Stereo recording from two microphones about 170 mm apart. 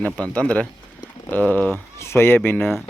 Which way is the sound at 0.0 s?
10° left (ahead or behind).